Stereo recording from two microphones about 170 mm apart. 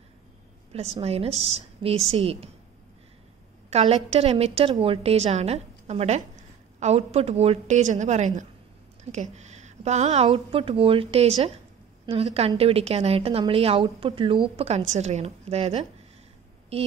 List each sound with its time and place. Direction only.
1.0 s a woman's voice: 35° right (ahead or behind)
3.7 s a woman's voice: 40° right (ahead or behind)